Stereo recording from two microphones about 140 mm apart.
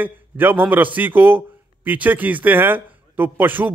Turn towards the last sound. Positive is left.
turn(degrees=-15)  # may be behind; listen again after turning